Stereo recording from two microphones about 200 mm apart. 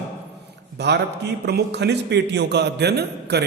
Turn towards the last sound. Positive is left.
turn(degrees=-55)  # may be behind; listen again after turning